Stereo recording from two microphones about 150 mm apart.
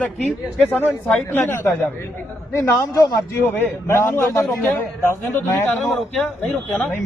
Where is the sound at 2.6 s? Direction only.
20° left (ahead or behind).